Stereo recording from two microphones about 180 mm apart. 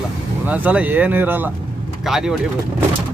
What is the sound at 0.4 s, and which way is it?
Speech, 10° right (ahead or behind).